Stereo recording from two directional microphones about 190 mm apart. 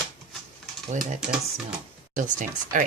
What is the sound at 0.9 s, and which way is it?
Speech, 40° right (ahead or behind).